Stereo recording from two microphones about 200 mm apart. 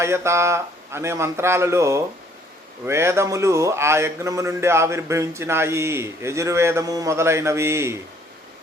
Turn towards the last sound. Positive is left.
turn(degrees=-15)  # may be behind; listen again after turning